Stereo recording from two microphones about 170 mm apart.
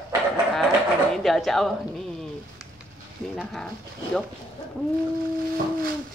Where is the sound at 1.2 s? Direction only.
Centre (ahead or behind).